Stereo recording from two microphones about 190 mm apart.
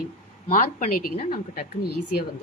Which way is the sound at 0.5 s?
50° left (ahead or behind).